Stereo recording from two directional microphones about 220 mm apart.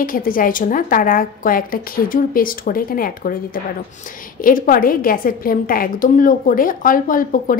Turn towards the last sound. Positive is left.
turn(degrees=40)  # may be behind; listen again after turning